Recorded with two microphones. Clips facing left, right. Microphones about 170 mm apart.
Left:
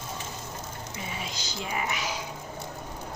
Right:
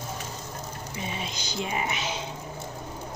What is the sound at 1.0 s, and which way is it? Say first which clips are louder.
Music: right 3 dB; 20° right (ahead or behind).